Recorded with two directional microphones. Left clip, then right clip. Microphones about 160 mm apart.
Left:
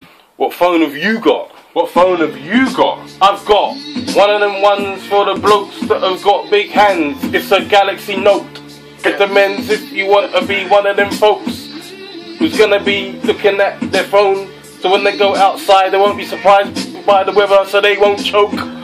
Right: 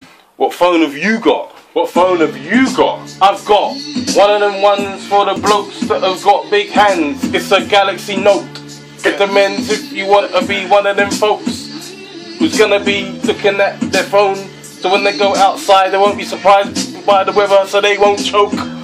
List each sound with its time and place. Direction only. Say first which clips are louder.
0.4 s speech: right 1 dB; 15° right (ahead or behind)
1.8 s speech: even; 5° left (ahead or behind)
3.2 s speech: even; 10° right (ahead or behind)
12.4 s speech: even; 10° right (ahead or behind)